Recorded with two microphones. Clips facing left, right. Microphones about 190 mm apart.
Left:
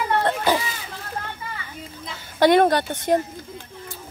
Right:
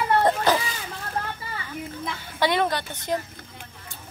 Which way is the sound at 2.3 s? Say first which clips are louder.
Left 8 dB; 50° left (ahead or behind).